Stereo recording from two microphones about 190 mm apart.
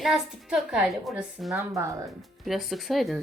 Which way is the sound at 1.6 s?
15° right (ahead or behind).